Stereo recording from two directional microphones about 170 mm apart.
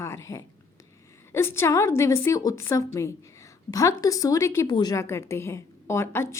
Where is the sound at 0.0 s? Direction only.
15° left (ahead or behind).